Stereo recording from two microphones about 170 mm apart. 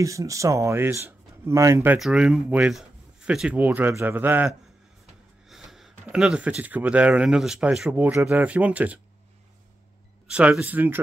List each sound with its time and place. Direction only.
0.0 s speech: 20° right (ahead or behind)
2.0 s speech: centre (ahead or behind)
10.2 s speech: 5° right (ahead or behind)